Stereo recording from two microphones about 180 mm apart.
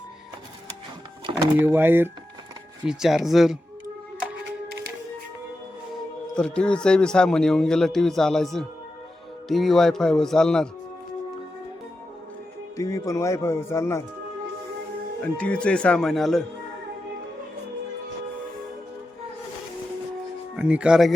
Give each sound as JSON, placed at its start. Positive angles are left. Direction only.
{"t": 1.5, "sound": "speech", "side_deg": -10}
{"t": 6.3, "sound": "speech", "side_deg": 5}
{"t": 12.7, "sound": "speech", "side_deg": 20}
{"t": 15.2, "sound": "speech", "side_deg": 5}
{"t": 20.6, "sound": "speech", "side_deg": -5}